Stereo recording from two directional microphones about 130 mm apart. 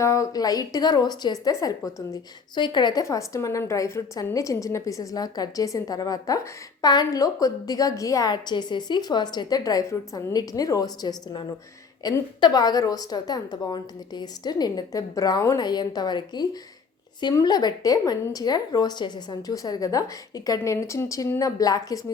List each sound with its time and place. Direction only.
0.0 s a woman's voice: 25° left (ahead or behind)
2.6 s a woman's voice: 35° left (ahead or behind)